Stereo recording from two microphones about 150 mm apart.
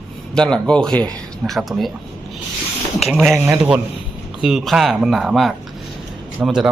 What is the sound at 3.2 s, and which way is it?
Speech, 15° right (ahead or behind).